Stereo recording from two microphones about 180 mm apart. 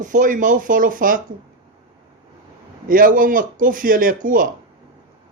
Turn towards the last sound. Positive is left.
turn(degrees=-50)  # may be behind; listen again after turning